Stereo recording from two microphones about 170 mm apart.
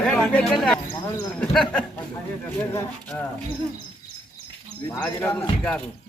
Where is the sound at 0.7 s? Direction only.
20° left (ahead or behind).